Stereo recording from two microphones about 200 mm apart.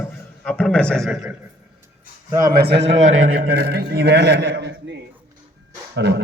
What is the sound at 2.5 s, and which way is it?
Speech, 55° right (ahead or behind).